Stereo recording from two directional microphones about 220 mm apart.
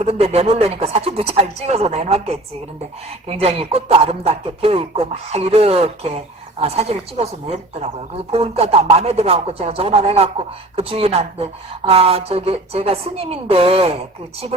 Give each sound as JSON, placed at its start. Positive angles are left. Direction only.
{"t": 0.0, "sound": "speech", "side_deg": -30}
{"t": 3.4, "sound": "speech", "side_deg": -25}